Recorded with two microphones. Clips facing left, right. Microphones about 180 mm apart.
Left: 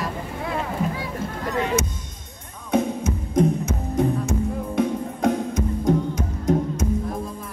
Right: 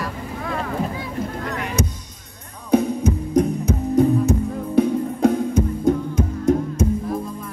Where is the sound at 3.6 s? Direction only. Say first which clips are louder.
Right 6 dB; 35° right (ahead or behind).